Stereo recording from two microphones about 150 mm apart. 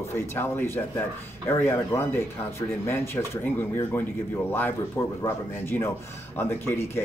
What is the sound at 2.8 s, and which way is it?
Speech, 15° left (ahead or behind).